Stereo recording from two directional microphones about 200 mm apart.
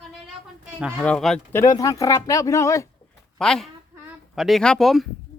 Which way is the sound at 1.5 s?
15° left (ahead or behind).